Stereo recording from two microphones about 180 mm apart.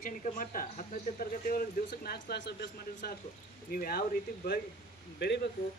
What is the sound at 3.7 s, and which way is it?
Speech, 55° left (ahead or behind).